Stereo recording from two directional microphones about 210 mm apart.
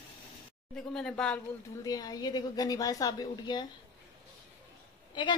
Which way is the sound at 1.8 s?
15° left (ahead or behind).